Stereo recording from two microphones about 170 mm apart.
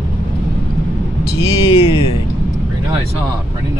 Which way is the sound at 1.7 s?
35° left (ahead or behind).